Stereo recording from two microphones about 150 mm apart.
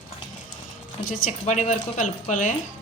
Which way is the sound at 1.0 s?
65° left (ahead or behind).